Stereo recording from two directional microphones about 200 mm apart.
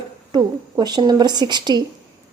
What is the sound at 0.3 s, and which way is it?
A woman's voice, 20° right (ahead or behind).